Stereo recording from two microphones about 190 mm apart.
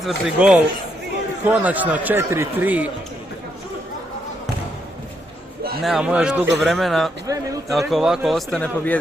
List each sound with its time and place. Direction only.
0.0 s speech: 5° right (ahead or behind)
5.8 s a man's voice: 5° right (ahead or behind)
7.3 s speech: 20° right (ahead or behind)
7.7 s a man's voice: centre (ahead or behind)